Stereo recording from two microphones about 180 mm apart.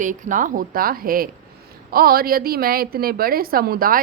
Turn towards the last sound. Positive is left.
turn(degrees=-55)  # may be behind; listen again after turning